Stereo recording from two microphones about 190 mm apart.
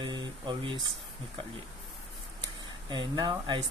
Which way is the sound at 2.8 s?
25° right (ahead or behind).